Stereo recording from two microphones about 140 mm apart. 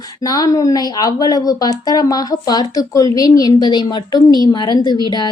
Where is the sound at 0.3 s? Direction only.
25° left (ahead or behind).